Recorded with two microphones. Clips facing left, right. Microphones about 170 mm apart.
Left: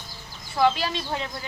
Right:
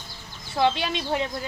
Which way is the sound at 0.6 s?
20° right (ahead or behind).